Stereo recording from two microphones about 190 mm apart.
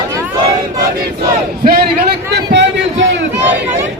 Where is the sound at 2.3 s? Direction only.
70° right (ahead or behind).